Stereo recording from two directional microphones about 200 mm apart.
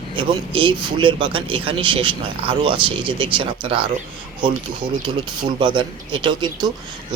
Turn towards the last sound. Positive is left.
turn(degrees=-25)  # may be behind; listen again after turning